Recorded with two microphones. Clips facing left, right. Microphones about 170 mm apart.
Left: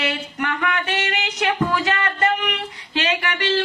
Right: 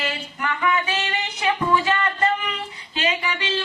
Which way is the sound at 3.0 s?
70° left (ahead or behind).